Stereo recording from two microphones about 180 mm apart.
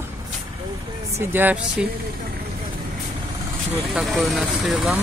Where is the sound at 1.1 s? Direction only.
10° right (ahead or behind).